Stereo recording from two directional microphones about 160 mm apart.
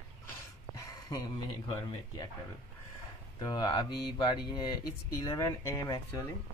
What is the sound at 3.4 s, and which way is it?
Speech, 25° left (ahead or behind).